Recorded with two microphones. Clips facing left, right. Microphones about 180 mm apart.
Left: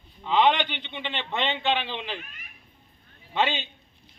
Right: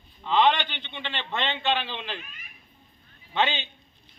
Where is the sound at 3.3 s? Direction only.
5° left (ahead or behind).